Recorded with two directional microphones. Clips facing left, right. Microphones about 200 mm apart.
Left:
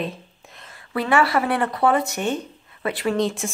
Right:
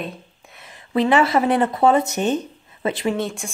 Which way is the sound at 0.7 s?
20° right (ahead or behind).